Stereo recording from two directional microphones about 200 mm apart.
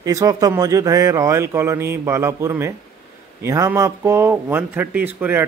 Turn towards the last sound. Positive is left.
turn(degrees=-10)  # may be behind; listen again after turning